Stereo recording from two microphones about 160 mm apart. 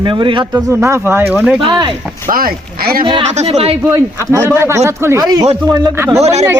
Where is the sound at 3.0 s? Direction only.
30° right (ahead or behind).